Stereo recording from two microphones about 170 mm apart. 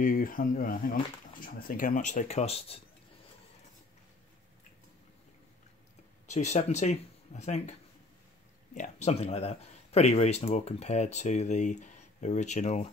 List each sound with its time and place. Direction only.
0.0 s speech: 55° left (ahead or behind); by 2.8 s 35° left (ahead or behind)
6.2 s speech: 45° left (ahead or behind)
8.7 s speech: 45° left (ahead or behind)